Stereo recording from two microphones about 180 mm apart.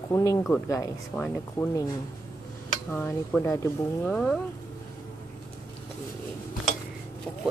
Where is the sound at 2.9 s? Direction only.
10° left (ahead or behind).